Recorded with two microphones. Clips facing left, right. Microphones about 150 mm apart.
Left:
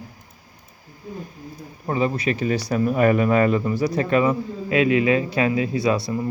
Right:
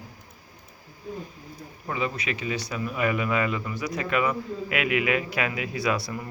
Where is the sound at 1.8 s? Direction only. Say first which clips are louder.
Left 7 dB; 40° left (ahead or behind).